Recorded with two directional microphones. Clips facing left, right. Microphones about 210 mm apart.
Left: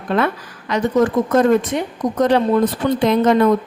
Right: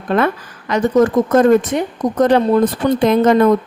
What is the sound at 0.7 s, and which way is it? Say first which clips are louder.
A woman's voice: right 3 dB; 45° right (ahead or behind).